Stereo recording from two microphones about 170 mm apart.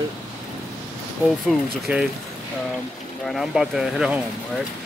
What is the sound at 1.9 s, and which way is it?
Speech, 10° right (ahead or behind).